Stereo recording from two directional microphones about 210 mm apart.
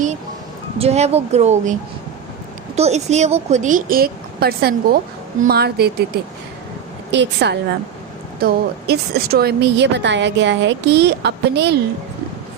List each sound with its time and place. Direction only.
0.8 s speech: 30° right (ahead or behind)
2.7 s a woman's voice: 30° right (ahead or behind); by 5.9 s 50° right (ahead or behind)
7.1 s a woman's voice: 55° right (ahead or behind)